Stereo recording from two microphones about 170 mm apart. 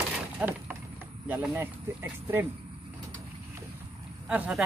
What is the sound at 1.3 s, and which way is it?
Speech, 10° right (ahead or behind).